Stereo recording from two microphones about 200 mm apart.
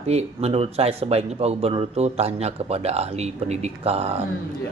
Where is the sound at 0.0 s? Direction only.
30° right (ahead or behind).